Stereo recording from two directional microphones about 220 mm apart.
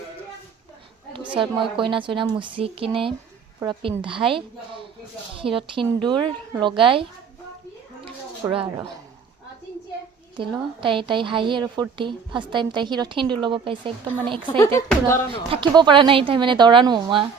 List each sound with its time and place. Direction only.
1.1 s a sound: 5° right (ahead or behind)
1.4 s a woman's voice: 20° right (ahead or behind)
8.0 s a sound: 25° right (ahead or behind)
10.3 s a woman's voice: 20° right (ahead or behind)
14.4 s speech: 10° left (ahead or behind)
15.3 s a woman's voice: 20° right (ahead or behind)